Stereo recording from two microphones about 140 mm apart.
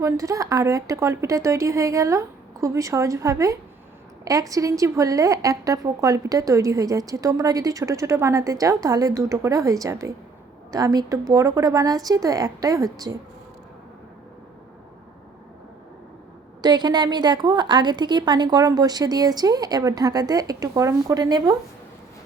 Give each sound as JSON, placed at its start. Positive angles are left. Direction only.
{"t": 0.0, "sound": "a woman's voice", "side_deg": -25}
{"t": 16.6, "sound": "a woman's voice", "side_deg": -30}